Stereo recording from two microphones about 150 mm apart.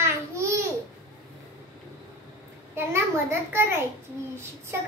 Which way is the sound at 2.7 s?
15° right (ahead or behind).